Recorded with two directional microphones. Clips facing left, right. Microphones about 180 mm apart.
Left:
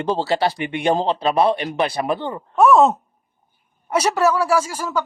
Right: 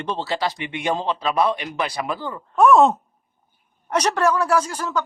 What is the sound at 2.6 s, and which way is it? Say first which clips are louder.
A man's voice: left 1 dB; centre (ahead or behind).